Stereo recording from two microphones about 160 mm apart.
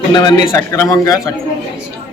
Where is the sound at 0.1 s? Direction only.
25° left (ahead or behind).